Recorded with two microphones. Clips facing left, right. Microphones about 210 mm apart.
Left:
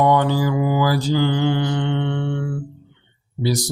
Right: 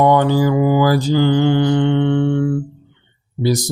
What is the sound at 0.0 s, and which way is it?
Mantra, 50° right (ahead or behind).